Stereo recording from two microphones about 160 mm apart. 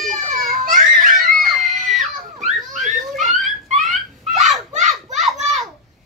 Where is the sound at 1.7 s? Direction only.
Centre (ahead or behind).